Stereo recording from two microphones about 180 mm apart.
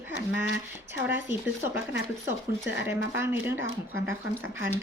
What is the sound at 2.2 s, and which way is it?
Speech, 90° left.